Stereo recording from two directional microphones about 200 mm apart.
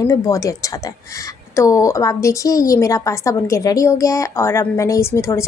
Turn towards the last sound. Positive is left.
turn(degrees=15)  # may be behind; listen again after turning